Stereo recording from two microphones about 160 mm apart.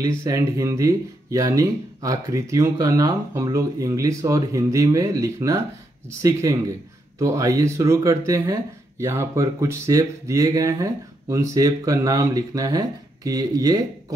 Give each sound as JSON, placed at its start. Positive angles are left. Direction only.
{"t": 0.0, "sound": "speech", "side_deg": -20}